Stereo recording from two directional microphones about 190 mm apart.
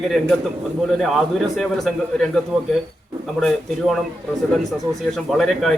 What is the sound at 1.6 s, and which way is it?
Speech, centre (ahead or behind).